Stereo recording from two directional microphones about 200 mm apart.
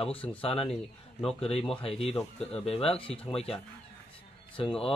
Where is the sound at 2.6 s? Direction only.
30° left (ahead or behind).